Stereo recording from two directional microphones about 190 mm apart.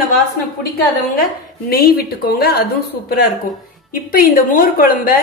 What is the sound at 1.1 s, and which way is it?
A woman's voice, 50° left (ahead or behind).